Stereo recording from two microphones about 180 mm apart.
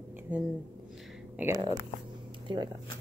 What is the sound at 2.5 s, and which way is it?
Speech, 25° right (ahead or behind).